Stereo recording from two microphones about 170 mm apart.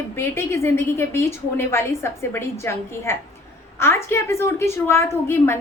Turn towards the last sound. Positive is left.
turn(degrees=15)  # may be behind; listen again after turning